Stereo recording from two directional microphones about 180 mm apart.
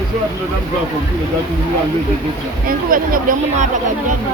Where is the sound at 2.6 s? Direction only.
50° right (ahead or behind).